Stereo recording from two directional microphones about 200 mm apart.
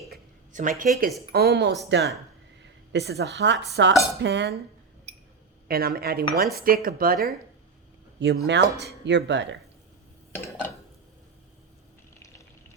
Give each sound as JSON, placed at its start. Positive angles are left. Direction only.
{"t": 0.1, "sound": "a sound", "side_deg": -45}
{"t": 1.3, "sound": "speech", "side_deg": -50}
{"t": 5.6, "sound": "speech", "side_deg": -50}
{"t": 8.2, "sound": "speech", "side_deg": -60}